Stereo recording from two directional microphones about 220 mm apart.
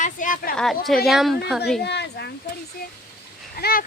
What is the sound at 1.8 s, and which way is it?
Speech, 50° left (ahead or behind).